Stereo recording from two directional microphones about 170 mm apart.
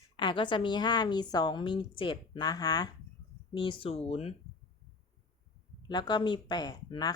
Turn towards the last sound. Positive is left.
turn(degrees=25)  # may be behind; listen again after turning